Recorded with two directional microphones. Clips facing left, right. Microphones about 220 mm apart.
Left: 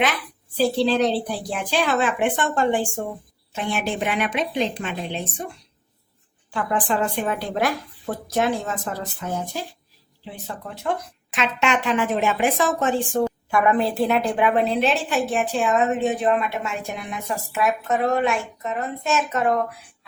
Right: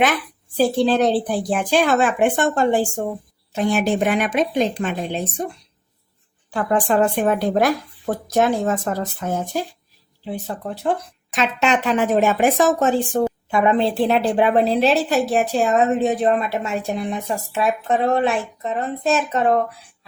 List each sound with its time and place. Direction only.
0.5 s speech: 50° right (ahead or behind)
6.5 s a woman's voice: 45° right (ahead or behind)
13.5 s a woman's voice: 25° right (ahead or behind)